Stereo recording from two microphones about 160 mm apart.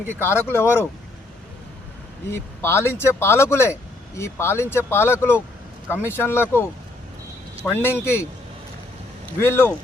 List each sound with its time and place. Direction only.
0.1 s speech: 15° left (ahead or behind)
2.3 s speech: 15° left (ahead or behind)
9.4 s speech: 15° left (ahead or behind)